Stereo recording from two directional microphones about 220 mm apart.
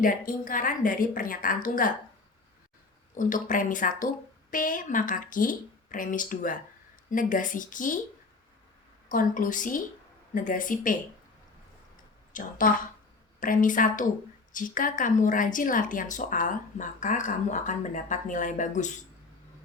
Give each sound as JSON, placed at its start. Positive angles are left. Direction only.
{"t": 0.0, "sound": "speech", "side_deg": 40}
{"t": 3.2, "sound": "speech", "side_deg": 35}
{"t": 9.0, "sound": "speech", "side_deg": 40}
{"t": 12.3, "sound": "speech", "side_deg": 35}